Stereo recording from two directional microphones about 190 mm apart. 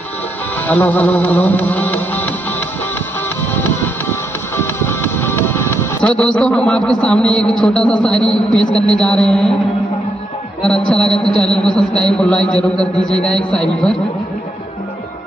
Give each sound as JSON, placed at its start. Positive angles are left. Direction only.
{"t": 0.7, "sound": "music", "side_deg": 10}
{"t": 3.5, "sound": "music", "side_deg": 10}
{"t": 8.7, "sound": "a man's voice", "side_deg": 5}
{"t": 10.6, "sound": "a man's voice", "side_deg": 5}